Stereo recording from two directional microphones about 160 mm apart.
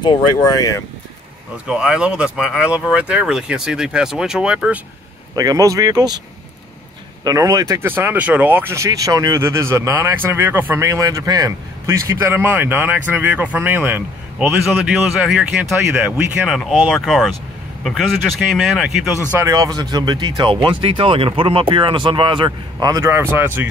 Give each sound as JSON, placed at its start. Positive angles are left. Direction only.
{"t": 0.0, "sound": "speech", "side_deg": 30}
{"t": 1.7, "sound": "speech", "side_deg": -5}
{"t": 5.3, "sound": "speech", "side_deg": -25}
{"t": 7.2, "sound": "speech", "side_deg": -20}
{"t": 18.5, "sound": "speech", "side_deg": 0}
{"t": 19.3, "sound": "speech", "side_deg": -20}